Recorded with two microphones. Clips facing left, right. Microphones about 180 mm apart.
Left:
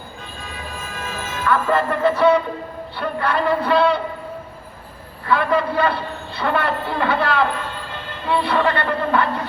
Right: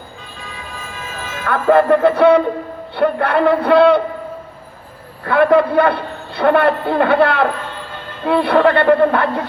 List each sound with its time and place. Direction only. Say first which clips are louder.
1.5 s a man's voice: right 7 dB; 60° right (ahead or behind)
5.2 s a man's voice: right 7 dB; 60° right (ahead or behind)